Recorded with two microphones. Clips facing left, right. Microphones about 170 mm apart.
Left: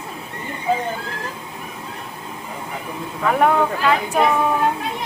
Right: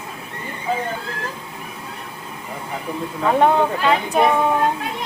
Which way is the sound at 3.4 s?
25° right (ahead or behind).